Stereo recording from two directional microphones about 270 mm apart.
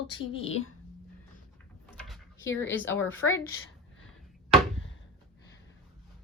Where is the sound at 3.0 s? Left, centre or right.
Left.